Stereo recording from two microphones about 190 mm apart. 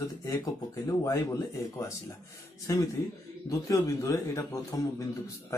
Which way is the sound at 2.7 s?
15° left (ahead or behind).